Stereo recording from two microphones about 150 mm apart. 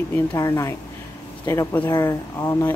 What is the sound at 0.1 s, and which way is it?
Speech, 15° left (ahead or behind).